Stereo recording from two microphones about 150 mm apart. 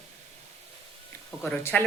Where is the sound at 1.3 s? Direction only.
5° left (ahead or behind).